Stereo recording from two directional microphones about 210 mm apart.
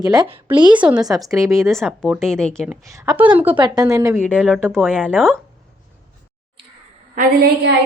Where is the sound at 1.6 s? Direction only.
Centre (ahead or behind).